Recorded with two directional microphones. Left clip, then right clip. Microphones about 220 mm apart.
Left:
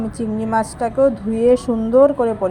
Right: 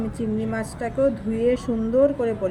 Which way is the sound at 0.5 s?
20° left (ahead or behind).